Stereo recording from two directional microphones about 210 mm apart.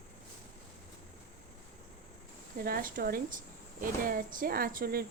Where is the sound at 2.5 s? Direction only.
45° right (ahead or behind).